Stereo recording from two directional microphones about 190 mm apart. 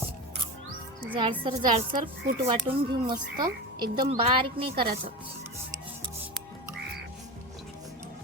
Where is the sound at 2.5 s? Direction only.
25° right (ahead or behind).